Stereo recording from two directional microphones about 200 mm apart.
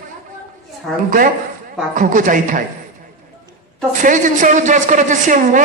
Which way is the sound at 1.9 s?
40° right (ahead or behind).